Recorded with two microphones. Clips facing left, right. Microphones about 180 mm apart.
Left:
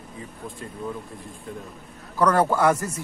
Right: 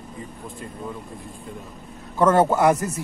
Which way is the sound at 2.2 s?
25° right (ahead or behind).